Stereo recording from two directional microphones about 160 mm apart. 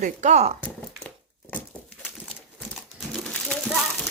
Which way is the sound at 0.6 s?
10° left (ahead or behind).